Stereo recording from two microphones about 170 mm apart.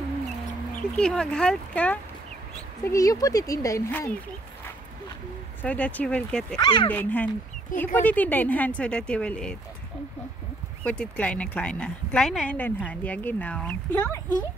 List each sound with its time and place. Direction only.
0.7 s speech: 5° left (ahead or behind)
2.8 s speech: 20° left (ahead or behind)
5.6 s a woman's voice: 10° left (ahead or behind)
6.6 s speech: 30° left (ahead or behind)
6.9 s a woman's voice: 10° left (ahead or behind)
10.8 s a woman's voice: 5° left (ahead or behind)